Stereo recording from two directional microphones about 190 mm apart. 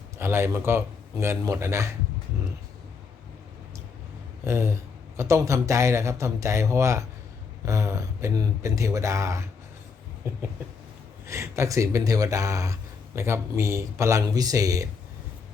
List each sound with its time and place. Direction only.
0.2 s speech: 10° right (ahead or behind)
4.4 s speech: 15° right (ahead or behind)